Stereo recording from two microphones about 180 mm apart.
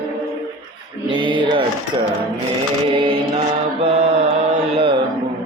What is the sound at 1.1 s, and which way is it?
Mantra, 25° right (ahead or behind).